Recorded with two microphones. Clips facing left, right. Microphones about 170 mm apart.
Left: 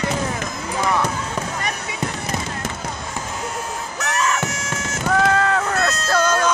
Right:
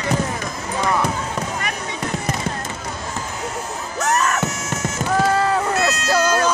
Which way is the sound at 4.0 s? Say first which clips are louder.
Right 3 dB; 50° right (ahead or behind).